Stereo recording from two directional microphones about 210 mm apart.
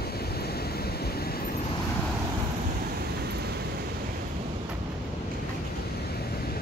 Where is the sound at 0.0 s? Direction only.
50° left (ahead or behind).